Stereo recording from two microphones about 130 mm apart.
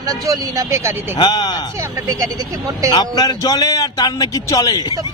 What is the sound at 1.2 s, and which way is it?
Speech, 30° left (ahead or behind).